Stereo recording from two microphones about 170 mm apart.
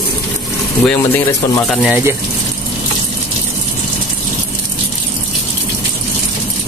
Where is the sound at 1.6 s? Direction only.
5° right (ahead or behind).